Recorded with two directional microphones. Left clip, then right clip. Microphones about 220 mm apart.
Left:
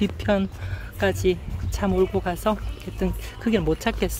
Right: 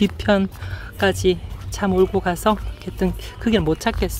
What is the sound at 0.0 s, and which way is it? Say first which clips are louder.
Speech: right 5 dB; 15° right (ahead or behind).